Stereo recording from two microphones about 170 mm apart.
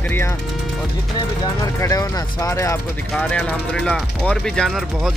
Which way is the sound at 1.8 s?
20° left (ahead or behind).